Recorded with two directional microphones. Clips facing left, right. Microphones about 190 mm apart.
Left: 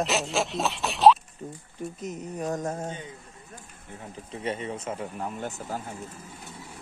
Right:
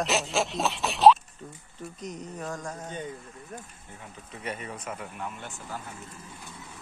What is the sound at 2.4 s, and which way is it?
Speech, 25° left (ahead or behind).